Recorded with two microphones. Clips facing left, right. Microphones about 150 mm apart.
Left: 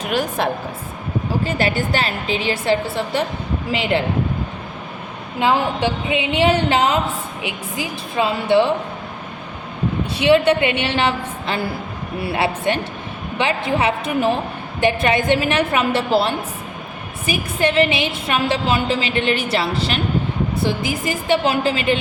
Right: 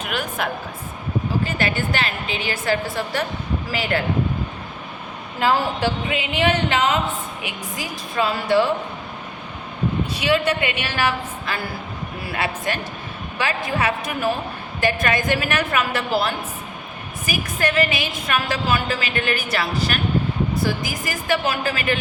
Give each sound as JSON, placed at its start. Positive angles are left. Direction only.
{"t": 0.0, "sound": "a woman's voice", "side_deg": 35}
{"t": 5.4, "sound": "a woman's voice", "side_deg": 20}
{"t": 10.2, "sound": "a woman's voice", "side_deg": 25}